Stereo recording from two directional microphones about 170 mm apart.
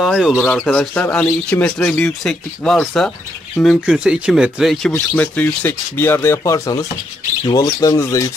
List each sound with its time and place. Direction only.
0.0 s speech: centre (ahead or behind); by 8.3 s 20° left (ahead or behind)